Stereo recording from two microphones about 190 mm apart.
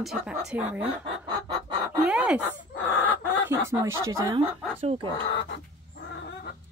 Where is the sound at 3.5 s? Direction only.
15° right (ahead or behind).